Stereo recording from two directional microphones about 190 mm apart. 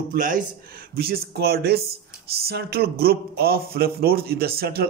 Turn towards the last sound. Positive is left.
turn(degrees=-55)  # may be behind; listen again after turning